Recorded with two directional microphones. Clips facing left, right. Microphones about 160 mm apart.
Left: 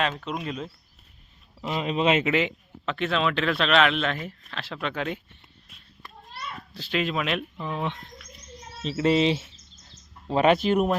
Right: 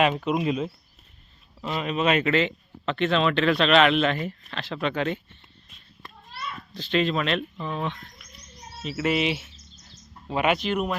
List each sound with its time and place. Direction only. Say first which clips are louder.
0.0 s speech: right 6 dB; 10° right (ahead or behind)
1.6 s speech: left 1 dB; 20° left (ahead or behind)
2.8 s speech: right 3 dB; 5° left (ahead or behind)
6.7 s speech: right 3 dB; 5° left (ahead or behind)
8.8 s speech: left 3 dB; 30° left (ahead or behind)